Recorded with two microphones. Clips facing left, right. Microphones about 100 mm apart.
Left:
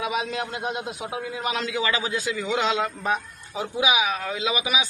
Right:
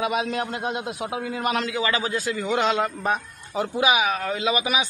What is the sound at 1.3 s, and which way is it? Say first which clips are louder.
Speech: right 4 dB; 50° right (ahead or behind).